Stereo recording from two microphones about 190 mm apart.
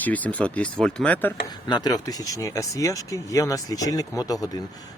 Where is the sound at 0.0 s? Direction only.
10° left (ahead or behind).